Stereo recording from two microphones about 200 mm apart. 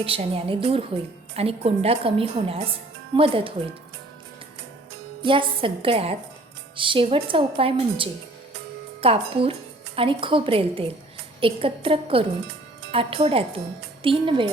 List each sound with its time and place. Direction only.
0.0 s a woman's voice: 30° right (ahead or behind)
5.2 s a woman's voice: 25° right (ahead or behind)